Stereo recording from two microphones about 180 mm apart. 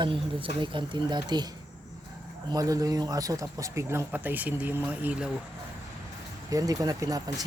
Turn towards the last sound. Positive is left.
turn(degrees=-20)  # may be behind; listen again after turning